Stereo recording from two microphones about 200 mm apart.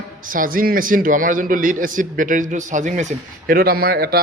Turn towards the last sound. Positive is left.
turn(degrees=-50)  # may be behind; listen again after turning